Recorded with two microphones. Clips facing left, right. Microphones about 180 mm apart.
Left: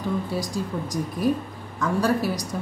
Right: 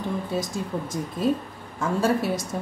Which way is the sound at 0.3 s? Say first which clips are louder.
Even; 25° right (ahead or behind).